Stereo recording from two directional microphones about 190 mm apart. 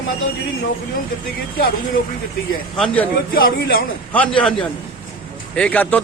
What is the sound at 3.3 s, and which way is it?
Speech, 50° left (ahead or behind).